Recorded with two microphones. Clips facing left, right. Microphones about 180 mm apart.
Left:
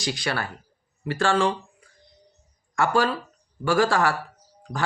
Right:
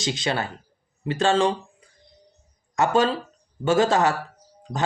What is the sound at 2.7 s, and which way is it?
Speech, 20° right (ahead or behind).